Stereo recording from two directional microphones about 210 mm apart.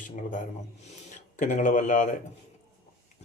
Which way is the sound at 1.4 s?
35° left (ahead or behind).